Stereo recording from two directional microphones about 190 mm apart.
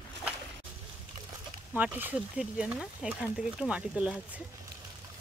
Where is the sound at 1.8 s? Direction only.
10° right (ahead or behind).